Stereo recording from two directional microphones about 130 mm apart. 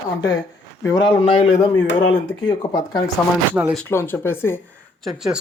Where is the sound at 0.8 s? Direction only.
25° left (ahead or behind).